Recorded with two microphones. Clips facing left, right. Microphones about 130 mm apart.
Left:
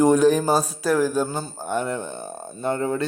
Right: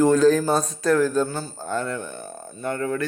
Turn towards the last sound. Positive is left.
turn(degrees=25)  # may be behind; listen again after turning